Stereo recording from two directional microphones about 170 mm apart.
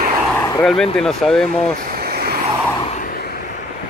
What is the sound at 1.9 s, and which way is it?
Vehicle, 65° right (ahead or behind).